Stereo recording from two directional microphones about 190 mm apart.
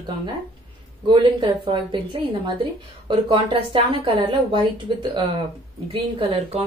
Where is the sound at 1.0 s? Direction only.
25° right (ahead or behind).